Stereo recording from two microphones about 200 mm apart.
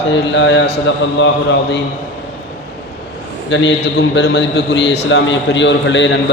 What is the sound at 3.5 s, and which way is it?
A man's voice, 65° left (ahead or behind).